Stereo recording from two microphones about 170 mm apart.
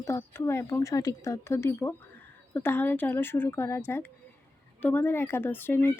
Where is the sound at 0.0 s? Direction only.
15° left (ahead or behind).